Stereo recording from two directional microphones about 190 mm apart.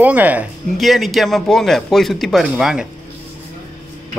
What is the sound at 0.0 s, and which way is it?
Speech, 10° right (ahead or behind).